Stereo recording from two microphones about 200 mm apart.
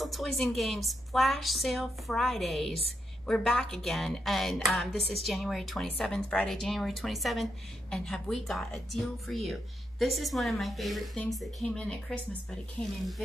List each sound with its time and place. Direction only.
0.0 s a woman's voice: centre (ahead or behind)